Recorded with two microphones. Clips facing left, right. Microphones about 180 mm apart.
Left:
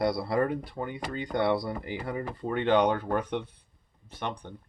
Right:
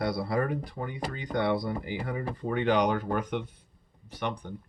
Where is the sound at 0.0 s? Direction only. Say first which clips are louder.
Left 2 dB; 25° left (ahead or behind).